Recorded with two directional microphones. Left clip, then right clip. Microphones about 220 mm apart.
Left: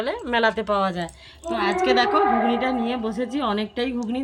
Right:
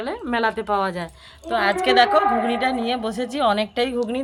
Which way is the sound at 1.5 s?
60° right (ahead or behind).